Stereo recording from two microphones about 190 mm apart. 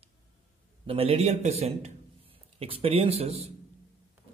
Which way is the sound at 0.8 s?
30° right (ahead or behind).